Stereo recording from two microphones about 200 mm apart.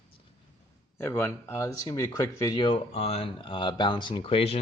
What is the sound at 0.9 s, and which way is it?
Speech, 15° left (ahead or behind).